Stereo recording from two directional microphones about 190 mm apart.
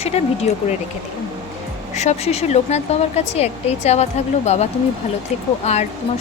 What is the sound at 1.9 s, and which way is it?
Speech, 35° left (ahead or behind).